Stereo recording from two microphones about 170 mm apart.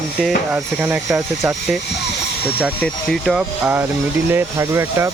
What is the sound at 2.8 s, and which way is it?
Speech, centre (ahead or behind).